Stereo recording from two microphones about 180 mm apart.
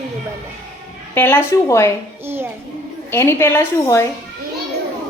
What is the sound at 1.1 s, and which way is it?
Speech, 10° left (ahead or behind).